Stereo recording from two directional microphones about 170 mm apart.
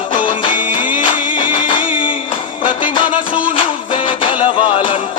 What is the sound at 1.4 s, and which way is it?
Music, 30° left (ahead or behind).